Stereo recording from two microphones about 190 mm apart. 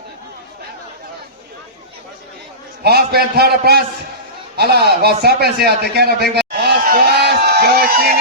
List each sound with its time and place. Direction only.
2.8 s a man's voice: 55° right (ahead or behind)